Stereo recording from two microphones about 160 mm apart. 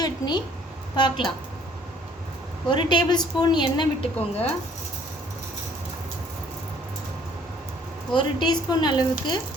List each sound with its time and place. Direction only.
0.0 s a woman's voice: 25° left (ahead or behind)
2.6 s a woman's voice: 30° left (ahead or behind)
8.1 s a woman's voice: 30° left (ahead or behind)